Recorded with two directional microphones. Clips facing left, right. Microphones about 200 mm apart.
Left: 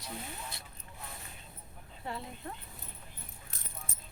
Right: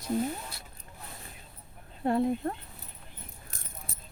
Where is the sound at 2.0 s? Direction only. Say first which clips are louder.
Right 15 dB; 55° right (ahead or behind).